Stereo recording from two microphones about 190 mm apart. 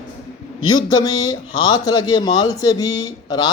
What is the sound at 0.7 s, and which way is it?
A man's voice, 20° left (ahead or behind).